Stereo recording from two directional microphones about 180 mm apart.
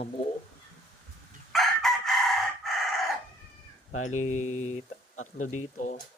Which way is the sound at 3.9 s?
40° left (ahead or behind).